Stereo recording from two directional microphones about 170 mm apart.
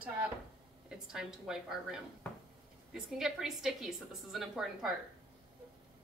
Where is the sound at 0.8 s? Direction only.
Centre (ahead or behind).